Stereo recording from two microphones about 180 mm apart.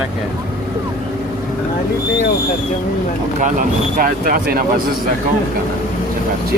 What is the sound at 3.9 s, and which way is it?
Speech, 55° right (ahead or behind).